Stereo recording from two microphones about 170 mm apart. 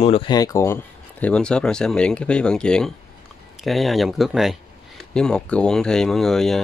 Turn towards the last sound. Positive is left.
turn(degrees=0)  # may be behind; listen again after turning